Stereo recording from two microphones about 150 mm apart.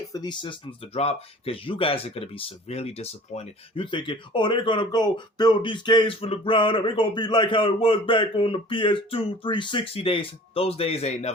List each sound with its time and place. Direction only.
0.1 s speech: 30° left (ahead or behind); by 11.3 s 45° left (ahead or behind)